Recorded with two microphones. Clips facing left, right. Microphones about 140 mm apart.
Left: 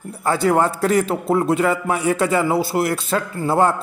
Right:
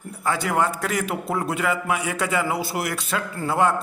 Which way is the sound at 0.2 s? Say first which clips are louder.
Left 6 dB; 35° left (ahead or behind).